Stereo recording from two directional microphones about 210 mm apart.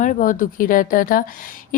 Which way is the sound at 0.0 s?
40° left (ahead or behind).